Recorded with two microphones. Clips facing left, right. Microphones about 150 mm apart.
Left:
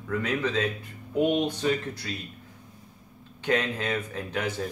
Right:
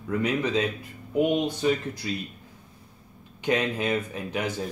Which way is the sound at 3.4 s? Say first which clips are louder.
Right 1 dB; 15° right (ahead or behind).